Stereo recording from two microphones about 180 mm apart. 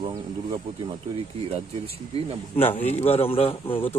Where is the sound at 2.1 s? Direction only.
35° right (ahead or behind).